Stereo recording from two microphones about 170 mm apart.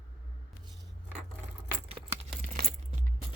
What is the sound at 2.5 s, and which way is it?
Keys jangling, 55° right (ahead or behind).